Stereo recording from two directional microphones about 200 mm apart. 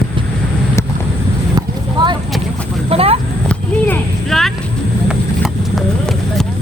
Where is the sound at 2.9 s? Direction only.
30° right (ahead or behind).